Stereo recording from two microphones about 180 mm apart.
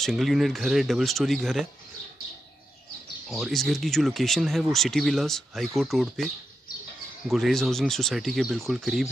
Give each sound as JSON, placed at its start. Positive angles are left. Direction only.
{"t": 0.0, "sound": "speech", "side_deg": 0}
{"t": 3.3, "sound": "speech", "side_deg": 0}
{"t": 7.2, "sound": "speech", "side_deg": 0}